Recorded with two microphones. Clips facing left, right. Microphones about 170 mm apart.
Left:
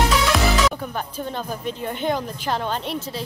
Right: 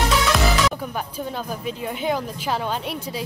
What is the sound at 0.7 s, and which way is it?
Speech, 5° right (ahead or behind).